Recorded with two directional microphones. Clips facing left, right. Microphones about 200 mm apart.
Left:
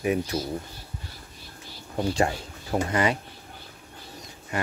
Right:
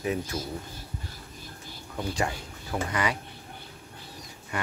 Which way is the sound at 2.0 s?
30° left (ahead or behind).